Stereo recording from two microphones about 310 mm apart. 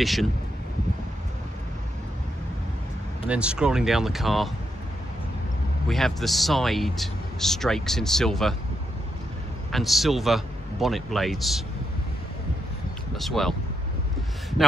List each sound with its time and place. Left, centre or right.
0.0 s speech: centre
3.3 s speech: centre
5.9 s speech: centre
9.7 s speech: centre
13.1 s speech: centre